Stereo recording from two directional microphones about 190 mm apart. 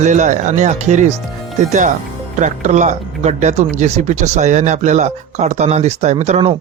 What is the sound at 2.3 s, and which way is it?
Speech, 40° right (ahead or behind).